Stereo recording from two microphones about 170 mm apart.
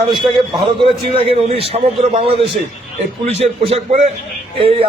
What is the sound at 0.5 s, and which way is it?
A man's voice, 30° right (ahead or behind).